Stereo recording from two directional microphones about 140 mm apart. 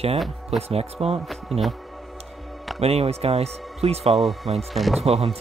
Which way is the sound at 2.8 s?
45° right (ahead or behind).